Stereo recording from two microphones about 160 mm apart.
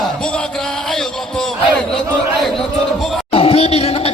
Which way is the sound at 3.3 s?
35° left (ahead or behind).